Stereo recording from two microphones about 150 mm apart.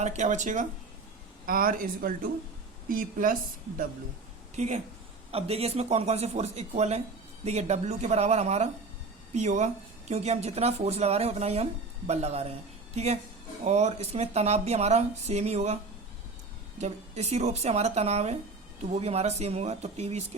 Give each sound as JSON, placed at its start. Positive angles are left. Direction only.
{"t": 0.0, "sound": "speech", "side_deg": -50}
{"t": 1.5, "sound": "speech", "side_deg": -70}
{"t": 4.5, "sound": "speech", "side_deg": -50}